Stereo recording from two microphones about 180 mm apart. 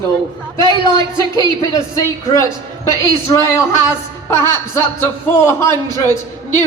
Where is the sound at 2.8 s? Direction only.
15° left (ahead or behind).